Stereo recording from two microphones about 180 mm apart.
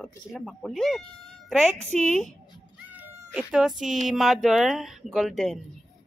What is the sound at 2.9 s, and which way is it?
Cat, 5° right (ahead or behind).